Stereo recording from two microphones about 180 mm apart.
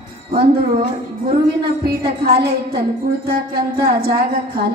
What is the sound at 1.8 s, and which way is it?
A woman's voice, 60° right (ahead or behind).